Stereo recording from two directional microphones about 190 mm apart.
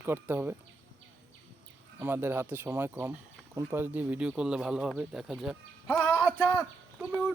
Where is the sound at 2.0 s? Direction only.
10° right (ahead or behind); by 6.2 s 5° left (ahead or behind).